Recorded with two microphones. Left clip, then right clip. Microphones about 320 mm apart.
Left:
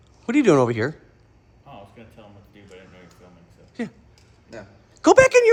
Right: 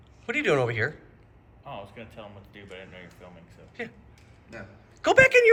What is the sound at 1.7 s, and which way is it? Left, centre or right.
Speech, centre.